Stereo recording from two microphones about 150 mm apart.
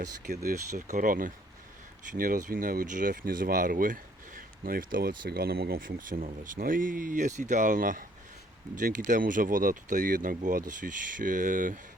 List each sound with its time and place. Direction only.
0.7 s speech: 55° right (ahead or behind)